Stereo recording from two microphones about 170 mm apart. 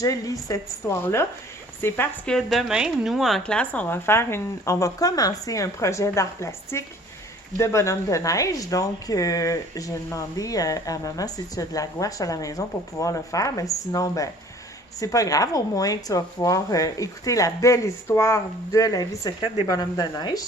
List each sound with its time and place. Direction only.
0.0 s a woman's voice: 20° left (ahead or behind)